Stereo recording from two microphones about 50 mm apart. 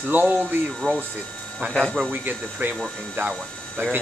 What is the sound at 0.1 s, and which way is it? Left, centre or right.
Speech, right.